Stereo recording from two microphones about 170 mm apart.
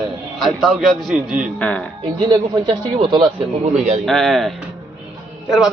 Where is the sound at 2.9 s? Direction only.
30° right (ahead or behind).